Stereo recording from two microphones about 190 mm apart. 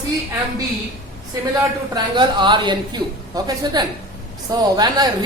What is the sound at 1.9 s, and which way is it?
A woman's voice, 25° right (ahead or behind).